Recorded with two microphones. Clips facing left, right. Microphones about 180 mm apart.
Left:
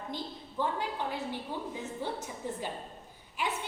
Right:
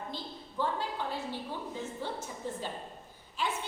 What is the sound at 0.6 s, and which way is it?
Speech, 15° left (ahead or behind).